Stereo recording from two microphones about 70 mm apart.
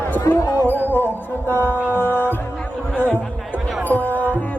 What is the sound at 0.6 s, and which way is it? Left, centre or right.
Music, left.